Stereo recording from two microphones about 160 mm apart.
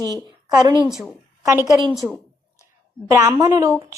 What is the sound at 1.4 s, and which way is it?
Speech, 20° right (ahead or behind).